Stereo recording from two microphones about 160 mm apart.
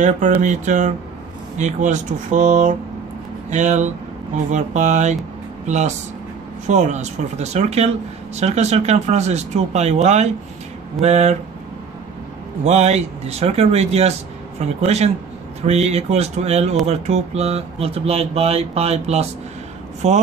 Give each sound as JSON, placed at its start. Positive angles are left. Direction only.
{"t": 0.0, "sound": "speech", "side_deg": -50}
{"t": 12.6, "sound": "speech", "side_deg": -40}